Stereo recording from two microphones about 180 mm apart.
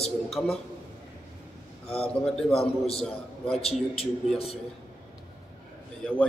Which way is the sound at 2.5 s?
35° left (ahead or behind).